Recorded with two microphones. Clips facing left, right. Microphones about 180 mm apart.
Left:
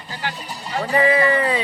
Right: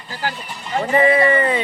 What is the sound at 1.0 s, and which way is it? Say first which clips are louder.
Speech: right 2 dB; centre (ahead or behind).